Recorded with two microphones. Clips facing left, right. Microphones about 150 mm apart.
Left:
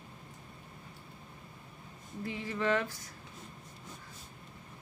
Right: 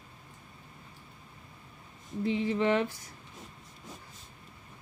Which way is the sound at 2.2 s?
20° right (ahead or behind).